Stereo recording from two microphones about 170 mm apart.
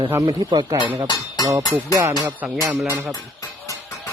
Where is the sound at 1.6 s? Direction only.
20° left (ahead or behind).